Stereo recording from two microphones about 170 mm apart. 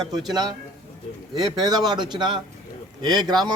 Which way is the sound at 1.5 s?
25° right (ahead or behind).